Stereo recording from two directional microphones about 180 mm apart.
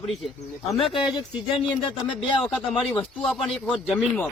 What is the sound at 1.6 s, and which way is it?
Speech, 25° left (ahead or behind).